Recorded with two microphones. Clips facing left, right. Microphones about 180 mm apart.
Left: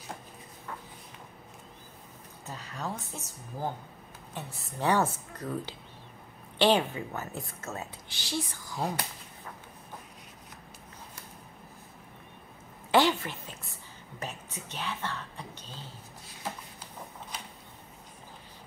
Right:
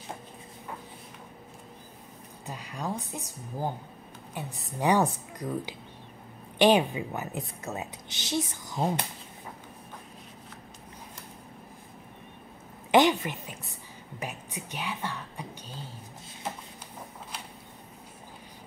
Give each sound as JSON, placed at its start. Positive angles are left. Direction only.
{"t": 2.4, "sound": "speech", "side_deg": -15}
{"t": 12.9, "sound": "a sound", "side_deg": -20}
{"t": 14.2, "sound": "speech", "side_deg": -10}